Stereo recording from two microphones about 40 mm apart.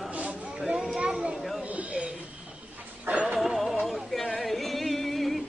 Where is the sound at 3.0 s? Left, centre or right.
Right.